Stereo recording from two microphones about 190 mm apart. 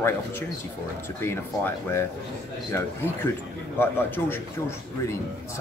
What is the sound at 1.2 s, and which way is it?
Speech, 10° left (ahead or behind).